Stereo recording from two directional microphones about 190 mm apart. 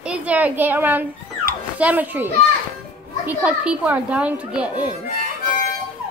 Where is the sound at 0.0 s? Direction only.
5° right (ahead or behind).